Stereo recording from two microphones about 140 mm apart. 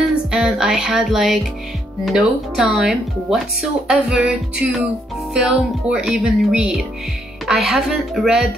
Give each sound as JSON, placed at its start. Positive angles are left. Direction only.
{"t": 0.1, "sound": "music", "side_deg": -5}
{"t": 2.0, "sound": "speech", "side_deg": -5}